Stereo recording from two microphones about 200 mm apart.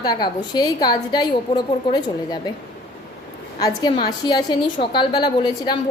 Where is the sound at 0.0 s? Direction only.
20° left (ahead or behind).